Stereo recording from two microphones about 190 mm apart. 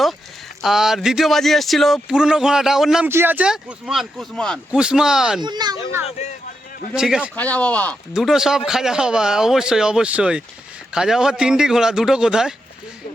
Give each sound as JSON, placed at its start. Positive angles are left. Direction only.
{"t": 0.6, "sound": "speech", "side_deg": 0}
{"t": 5.4, "sound": "speech", "side_deg": -20}
{"t": 6.9, "sound": "speech", "side_deg": -5}
{"t": 7.3, "sound": "speech", "side_deg": 5}